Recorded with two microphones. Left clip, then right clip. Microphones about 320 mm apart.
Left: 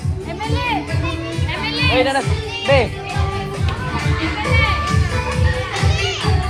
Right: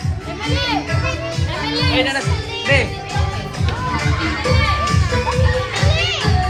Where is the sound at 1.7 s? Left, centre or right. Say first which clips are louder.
Left 2 dB; centre.